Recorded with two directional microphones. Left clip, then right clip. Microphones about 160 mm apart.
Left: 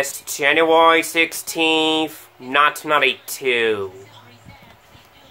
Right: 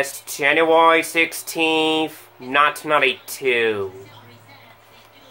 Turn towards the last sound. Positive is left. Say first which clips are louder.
# even
turn(degrees=15)  # may be behind; listen again after turning